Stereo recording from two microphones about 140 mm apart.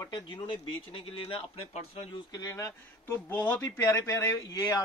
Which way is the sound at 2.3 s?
25° left (ahead or behind).